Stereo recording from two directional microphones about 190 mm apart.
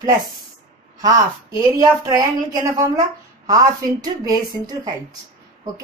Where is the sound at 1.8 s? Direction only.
20° right (ahead or behind).